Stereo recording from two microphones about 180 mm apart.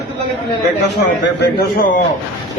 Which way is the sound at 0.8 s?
75° left (ahead or behind).